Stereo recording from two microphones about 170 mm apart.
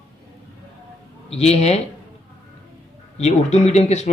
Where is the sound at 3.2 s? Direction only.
40° left (ahead or behind).